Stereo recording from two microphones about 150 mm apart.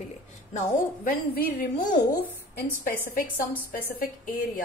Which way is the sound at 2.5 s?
75° left (ahead or behind).